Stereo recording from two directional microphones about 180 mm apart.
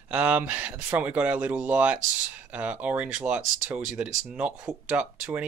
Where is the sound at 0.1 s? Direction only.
10° right (ahead or behind).